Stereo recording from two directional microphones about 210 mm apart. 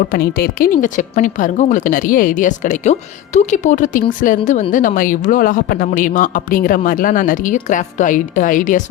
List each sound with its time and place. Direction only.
0.1 s speech: 45° left (ahead or behind)